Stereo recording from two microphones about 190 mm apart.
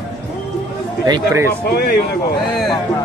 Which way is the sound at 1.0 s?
20° right (ahead or behind).